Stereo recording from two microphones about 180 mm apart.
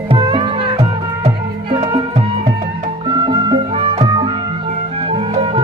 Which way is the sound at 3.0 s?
25° right (ahead or behind).